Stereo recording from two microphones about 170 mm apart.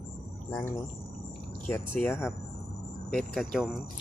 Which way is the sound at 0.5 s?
25° left (ahead or behind).